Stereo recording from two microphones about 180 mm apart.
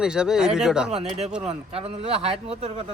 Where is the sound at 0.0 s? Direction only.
5° right (ahead or behind).